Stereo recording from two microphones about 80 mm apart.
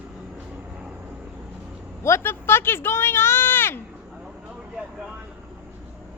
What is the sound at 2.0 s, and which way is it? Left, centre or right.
Speech, left.